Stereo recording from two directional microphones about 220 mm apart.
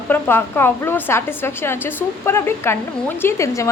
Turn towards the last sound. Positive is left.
turn(degrees=15)  # may be behind; listen again after turning